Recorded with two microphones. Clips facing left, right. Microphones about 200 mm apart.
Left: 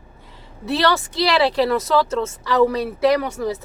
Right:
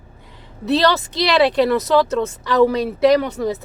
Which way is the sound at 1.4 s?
20° right (ahead or behind).